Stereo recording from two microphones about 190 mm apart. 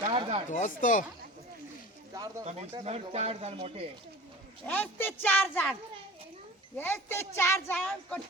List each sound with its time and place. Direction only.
0.1 s chop: 30° right (ahead or behind)
0.5 s speech: 40° left (ahead or behind)
2.1 s a sound: 20° right (ahead or behind)
2.4 s speech: 35° right (ahead or behind)
4.6 s speech: 10° left (ahead or behind)
6.7 s speech: 10° left (ahead or behind)